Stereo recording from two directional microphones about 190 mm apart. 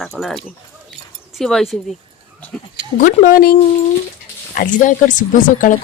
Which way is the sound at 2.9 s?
45° left (ahead or behind).